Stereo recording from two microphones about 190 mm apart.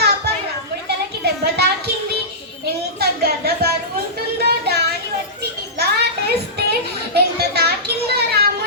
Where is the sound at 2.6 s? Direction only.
55° right (ahead or behind).